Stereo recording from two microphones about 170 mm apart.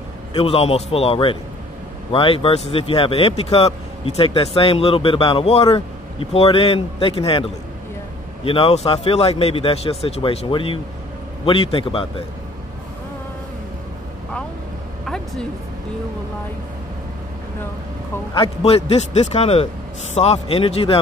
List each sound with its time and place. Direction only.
0.3 s speech: 35° left (ahead or behind)
15.0 s a sound: centre (ahead or behind)
18.3 s speech: 35° left (ahead or behind)